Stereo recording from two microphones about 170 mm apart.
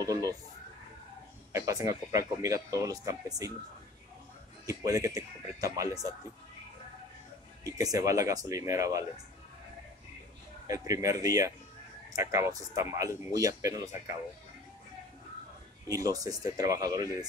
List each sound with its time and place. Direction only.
0.0 s speech: 20° right (ahead or behind)
1.5 s speech: 20° right (ahead or behind)
4.6 s speech: 20° right (ahead or behind)
7.6 s speech: 20° right (ahead or behind)
10.7 s speech: 20° right (ahead or behind)
15.9 s speech: 20° right (ahead or behind)